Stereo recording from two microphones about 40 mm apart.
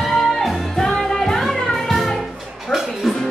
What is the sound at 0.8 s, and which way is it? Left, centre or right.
Music, centre.